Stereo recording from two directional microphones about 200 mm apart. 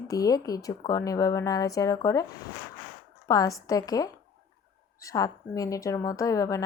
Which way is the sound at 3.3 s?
15° left (ahead or behind).